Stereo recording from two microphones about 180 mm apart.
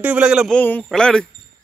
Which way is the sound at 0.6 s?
10° left (ahead or behind).